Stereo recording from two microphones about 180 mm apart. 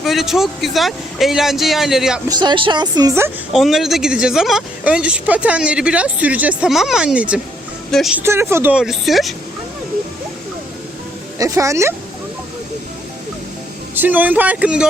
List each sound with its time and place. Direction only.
0.0 s speech: centre (ahead or behind)
2.3 s speech: 25° right (ahead or behind)
3.5 s speech: centre (ahead or behind)
8.2 s a woman's voice: 15° right (ahead or behind)
11.3 s a woman's voice: 20° right (ahead or behind)
13.9 s a woman's voice: 10° right (ahead or behind)